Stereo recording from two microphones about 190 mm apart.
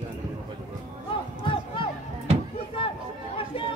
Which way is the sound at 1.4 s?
25° left (ahead or behind).